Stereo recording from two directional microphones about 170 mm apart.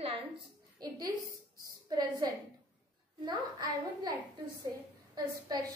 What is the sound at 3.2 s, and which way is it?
Speech, 25° right (ahead or behind).